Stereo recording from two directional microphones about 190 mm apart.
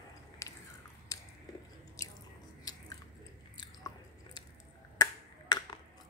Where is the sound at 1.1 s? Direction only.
20° left (ahead or behind).